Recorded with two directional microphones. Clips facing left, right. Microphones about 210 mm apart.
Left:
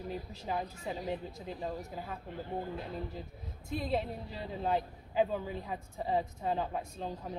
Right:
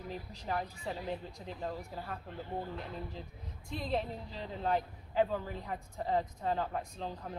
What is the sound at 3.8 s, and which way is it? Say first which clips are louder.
A man's voice: even; 10° left (ahead or behind).